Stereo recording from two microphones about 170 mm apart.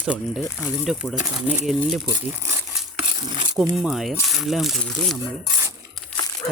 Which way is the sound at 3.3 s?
30° right (ahead or behind).